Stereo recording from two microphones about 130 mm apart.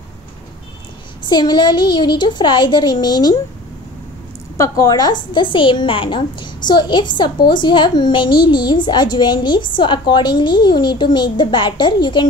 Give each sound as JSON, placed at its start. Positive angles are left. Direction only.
{"t": 1.2, "sound": "a woman's voice", "side_deg": 35}
{"t": 4.6, "sound": "a woman's voice", "side_deg": 25}